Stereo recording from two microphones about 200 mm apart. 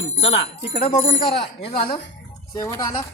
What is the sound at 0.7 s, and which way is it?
Speech, 35° left (ahead or behind).